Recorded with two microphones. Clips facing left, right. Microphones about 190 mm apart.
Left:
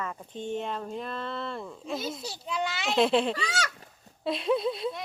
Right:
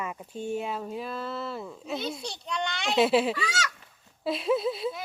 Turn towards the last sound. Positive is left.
turn(degrees=0)  # may be behind; listen again after turning